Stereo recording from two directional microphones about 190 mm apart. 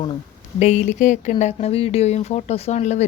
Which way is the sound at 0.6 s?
35° left (ahead or behind).